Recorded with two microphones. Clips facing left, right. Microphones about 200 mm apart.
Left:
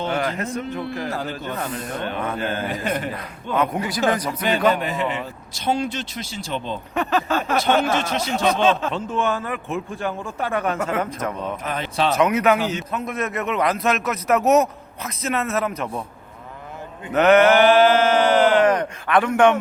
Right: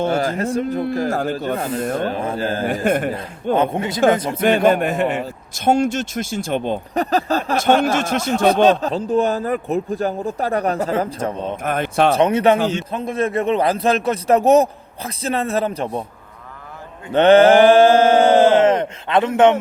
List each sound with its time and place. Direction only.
0.0 s speech: 40° right (ahead or behind)
0.3 s speech: 30° right (ahead or behind)
0.8 s a man's voice: 45° right (ahead or behind)
1.5 s mantra: 25° right (ahead or behind)
2.0 s speech: 30° right (ahead or behind)
2.6 s a man's voice: 50° right (ahead or behind)
3.5 s mantra: 25° right (ahead or behind)
4.4 s a man's voice: 50° right (ahead or behind)
6.9 s speech: 40° right (ahead or behind)
7.9 s speech: 50° right (ahead or behind); by 11.6 s 30° right (ahead or behind)
11.6 s a man's voice: 55° right (ahead or behind)
12.1 s mantra: 30° right (ahead or behind)
12.6 s speech: 30° right (ahead or behind)
17.1 s mantra: 30° right (ahead or behind)